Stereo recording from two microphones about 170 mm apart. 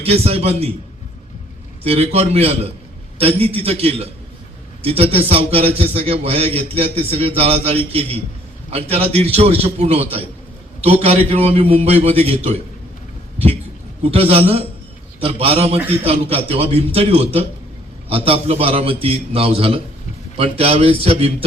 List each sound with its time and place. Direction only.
0.0 s a man's voice: 35° right (ahead or behind)
1.8 s a man's voice: 35° right (ahead or behind)
14.0 s a man's voice: 35° right (ahead or behind)